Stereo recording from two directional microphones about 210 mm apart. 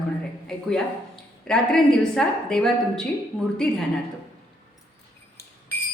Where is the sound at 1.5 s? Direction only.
5° left (ahead or behind).